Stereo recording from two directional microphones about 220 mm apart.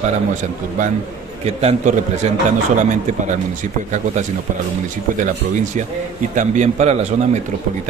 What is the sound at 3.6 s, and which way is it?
A man's voice, 35° right (ahead or behind).